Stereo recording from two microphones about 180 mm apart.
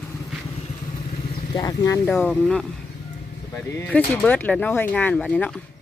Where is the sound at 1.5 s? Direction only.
20° left (ahead or behind); by 2.6 s 5° left (ahead or behind).